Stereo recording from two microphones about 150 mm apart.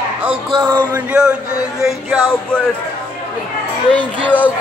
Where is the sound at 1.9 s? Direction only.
Centre (ahead or behind).